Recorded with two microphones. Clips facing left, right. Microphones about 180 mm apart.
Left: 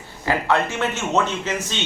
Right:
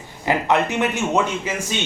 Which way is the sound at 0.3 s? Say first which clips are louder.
Right 2 dB; 20° right (ahead or behind).